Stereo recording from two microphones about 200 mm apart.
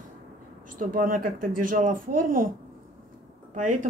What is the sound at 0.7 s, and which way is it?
Speech, 45° right (ahead or behind).